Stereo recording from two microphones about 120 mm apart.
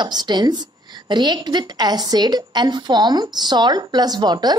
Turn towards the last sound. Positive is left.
turn(degrees=-35)  # may be behind; listen again after turning